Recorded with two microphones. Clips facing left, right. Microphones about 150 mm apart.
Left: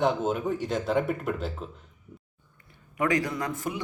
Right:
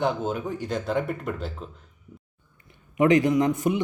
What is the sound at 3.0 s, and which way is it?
Speech, 20° right (ahead or behind).